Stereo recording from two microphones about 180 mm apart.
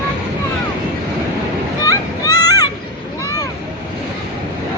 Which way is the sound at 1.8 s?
20° left (ahead or behind).